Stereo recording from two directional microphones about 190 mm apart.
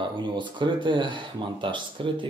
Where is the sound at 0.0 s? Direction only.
25° right (ahead or behind).